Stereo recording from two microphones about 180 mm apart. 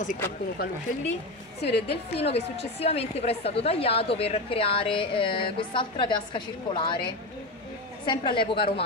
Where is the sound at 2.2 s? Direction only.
35° left (ahead or behind).